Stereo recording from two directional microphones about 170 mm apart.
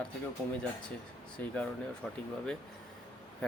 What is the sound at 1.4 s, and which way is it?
Speech, 10° left (ahead or behind).